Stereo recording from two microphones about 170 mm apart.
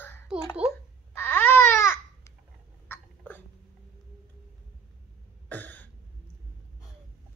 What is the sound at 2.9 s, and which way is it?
Hiccup, 10° left (ahead or behind).